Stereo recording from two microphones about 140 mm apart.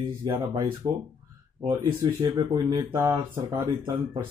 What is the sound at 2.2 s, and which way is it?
Speech, 30° right (ahead or behind).